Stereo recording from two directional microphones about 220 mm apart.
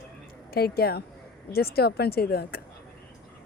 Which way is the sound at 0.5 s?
45° left (ahead or behind).